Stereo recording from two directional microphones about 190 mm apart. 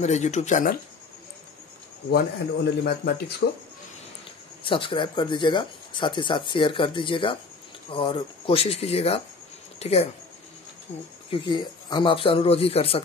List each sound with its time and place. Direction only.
0.0 s speech: 35° left (ahead or behind)
2.0 s a man's voice: 60° left (ahead or behind)
4.6 s speech: 25° left (ahead or behind)
11.2 s speech: 25° left (ahead or behind)